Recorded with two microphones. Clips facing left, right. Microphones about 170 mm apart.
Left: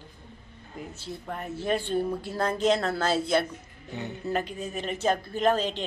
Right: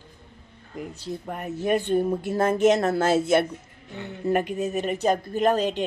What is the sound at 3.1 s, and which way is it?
Speech, 50° right (ahead or behind).